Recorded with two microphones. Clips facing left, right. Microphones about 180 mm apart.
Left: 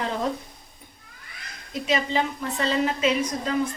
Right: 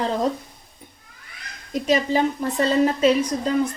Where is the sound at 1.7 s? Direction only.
40° right (ahead or behind).